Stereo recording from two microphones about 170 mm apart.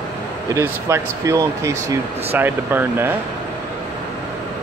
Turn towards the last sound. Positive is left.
turn(degrees=-10)  # may be behind; listen again after turning